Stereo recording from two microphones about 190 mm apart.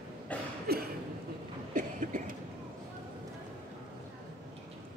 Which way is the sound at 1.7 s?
45° right (ahead or behind).